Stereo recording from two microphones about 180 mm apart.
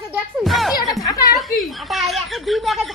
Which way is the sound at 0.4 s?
Centre (ahead or behind).